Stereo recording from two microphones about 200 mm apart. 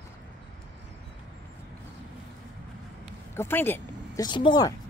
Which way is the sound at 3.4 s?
10° left (ahead or behind).